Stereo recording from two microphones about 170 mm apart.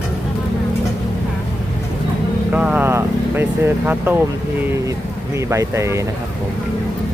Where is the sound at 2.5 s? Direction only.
5° right (ahead or behind).